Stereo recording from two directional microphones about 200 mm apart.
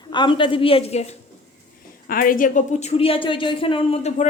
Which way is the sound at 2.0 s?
45° left (ahead or behind).